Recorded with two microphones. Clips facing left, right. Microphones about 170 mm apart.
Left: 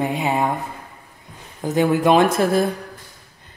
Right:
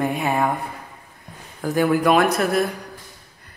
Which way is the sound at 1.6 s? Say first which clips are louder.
Left 1 dB; 20° left (ahead or behind).